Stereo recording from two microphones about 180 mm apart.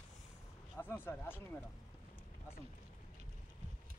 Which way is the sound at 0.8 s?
10° left (ahead or behind).